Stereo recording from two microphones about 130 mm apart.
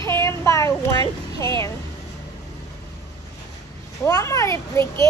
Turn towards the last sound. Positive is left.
turn(degrees=20)  # may be behind; listen again after turning